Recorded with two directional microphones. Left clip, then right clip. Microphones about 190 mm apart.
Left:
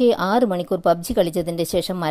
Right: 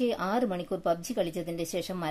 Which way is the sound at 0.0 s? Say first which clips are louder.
Left 11 dB; 35° left (ahead or behind).